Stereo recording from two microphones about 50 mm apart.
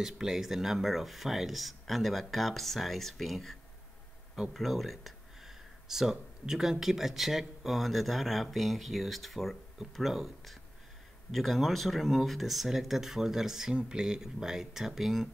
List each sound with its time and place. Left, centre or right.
0.0 s speech: centre